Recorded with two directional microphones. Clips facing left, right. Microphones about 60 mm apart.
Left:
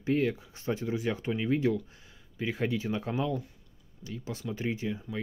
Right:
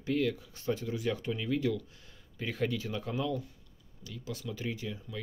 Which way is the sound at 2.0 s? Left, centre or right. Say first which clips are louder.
Left 4 dB; centre.